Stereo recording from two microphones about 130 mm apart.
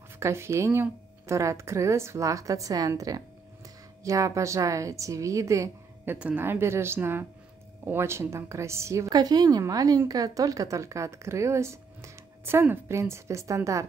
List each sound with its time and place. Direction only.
0.2 s a woman's voice: 20° right (ahead or behind)
6.1 s a woman's voice: 10° right (ahead or behind)